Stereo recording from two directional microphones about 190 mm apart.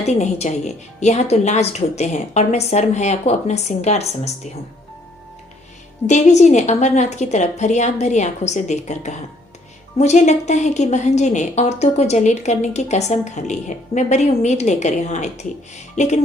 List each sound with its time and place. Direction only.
0.0 s a woman's voice: 35° left (ahead or behind)
6.1 s a woman's voice: 40° left (ahead or behind)